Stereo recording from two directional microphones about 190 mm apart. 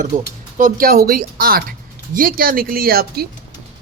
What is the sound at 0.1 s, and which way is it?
Speech, 45° right (ahead or behind).